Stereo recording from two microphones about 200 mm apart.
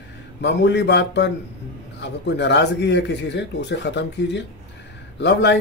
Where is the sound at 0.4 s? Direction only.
60° left (ahead or behind).